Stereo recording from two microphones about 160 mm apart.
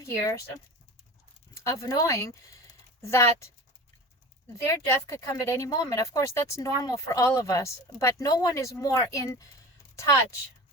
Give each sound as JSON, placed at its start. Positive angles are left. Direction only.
{"t": 0.0, "sound": "speech", "side_deg": 20}
{"t": 1.5, "sound": "a woman's voice", "side_deg": 20}
{"t": 4.5, "sound": "speech", "side_deg": 20}